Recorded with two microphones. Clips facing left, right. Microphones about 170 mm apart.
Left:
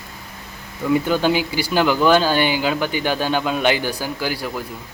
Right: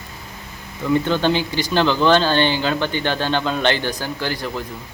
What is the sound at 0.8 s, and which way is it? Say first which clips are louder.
Speech: even; 10° left (ahead or behind).